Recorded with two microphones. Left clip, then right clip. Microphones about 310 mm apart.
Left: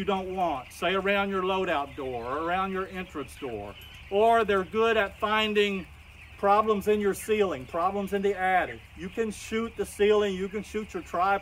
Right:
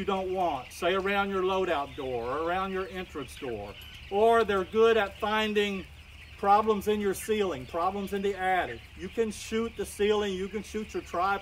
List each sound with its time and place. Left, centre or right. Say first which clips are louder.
0.0 s speech: left 1 dB; centre